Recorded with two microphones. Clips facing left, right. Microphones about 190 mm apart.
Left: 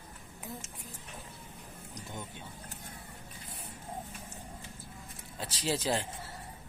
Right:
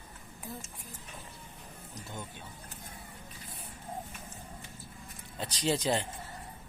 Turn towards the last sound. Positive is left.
turn(degrees=5)  # may be behind; listen again after turning